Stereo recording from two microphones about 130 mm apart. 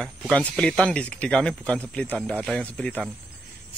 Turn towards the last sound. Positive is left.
turn(degrees=5)  # may be behind; listen again after turning